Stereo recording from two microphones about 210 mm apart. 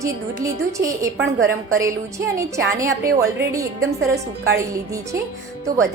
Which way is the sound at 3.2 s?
15° right (ahead or behind).